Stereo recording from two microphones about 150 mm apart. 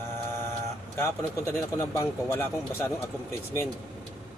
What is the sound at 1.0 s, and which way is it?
Speech, 15° left (ahead or behind).